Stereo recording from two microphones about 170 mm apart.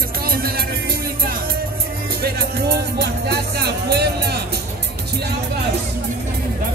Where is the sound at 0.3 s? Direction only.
60° right (ahead or behind).